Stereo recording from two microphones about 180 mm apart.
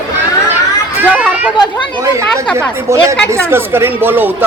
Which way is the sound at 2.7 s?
15° right (ahead or behind).